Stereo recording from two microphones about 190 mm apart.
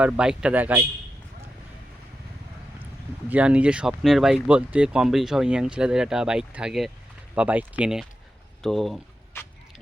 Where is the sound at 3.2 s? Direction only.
5° right (ahead or behind).